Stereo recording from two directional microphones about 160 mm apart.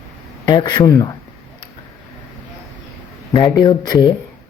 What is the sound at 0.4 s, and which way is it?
Speech, 25° left (ahead or behind).